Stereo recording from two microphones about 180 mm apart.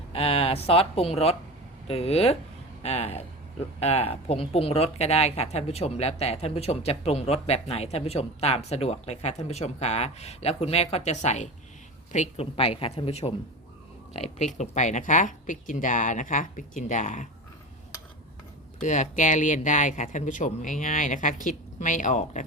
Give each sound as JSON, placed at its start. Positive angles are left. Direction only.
{"t": 0.1, "sound": "speech", "side_deg": 35}
{"t": 18.8, "sound": "speech", "side_deg": 40}